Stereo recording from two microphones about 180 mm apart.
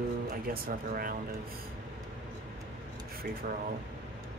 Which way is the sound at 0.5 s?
55° right (ahead or behind).